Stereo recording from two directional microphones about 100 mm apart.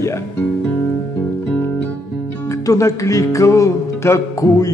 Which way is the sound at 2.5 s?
35° left (ahead or behind).